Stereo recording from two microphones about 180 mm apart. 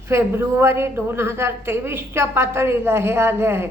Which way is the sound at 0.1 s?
15° right (ahead or behind).